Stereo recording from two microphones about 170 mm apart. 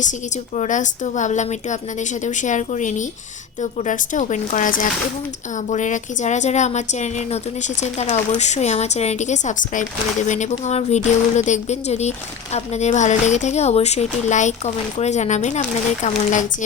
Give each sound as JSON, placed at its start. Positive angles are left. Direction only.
{"t": 0.5, "sound": "a woman's voice", "side_deg": 45}